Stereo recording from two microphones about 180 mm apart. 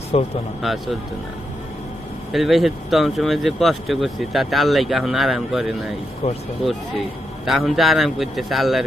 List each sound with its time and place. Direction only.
0.1 s speech: 35° left (ahead or behind)
0.6 s speech: centre (ahead or behind)
2.3 s speech: centre (ahead or behind)
6.2 s speech: 40° left (ahead or behind)
7.4 s speech: centre (ahead or behind)